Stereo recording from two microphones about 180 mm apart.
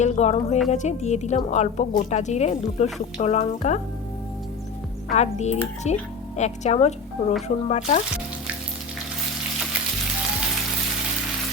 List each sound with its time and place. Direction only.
0.0 s speech: 40° left (ahead or behind)
5.1 s speech: 40° left (ahead or behind)